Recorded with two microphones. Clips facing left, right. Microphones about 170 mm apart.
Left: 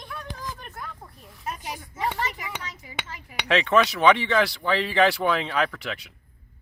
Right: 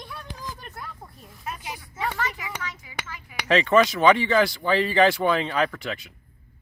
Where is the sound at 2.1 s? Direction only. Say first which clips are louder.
Even; 20° left (ahead or behind).